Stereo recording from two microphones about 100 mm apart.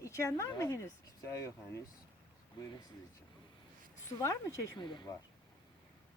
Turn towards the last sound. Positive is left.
turn(degrees=50)  # may be behind; listen again after turning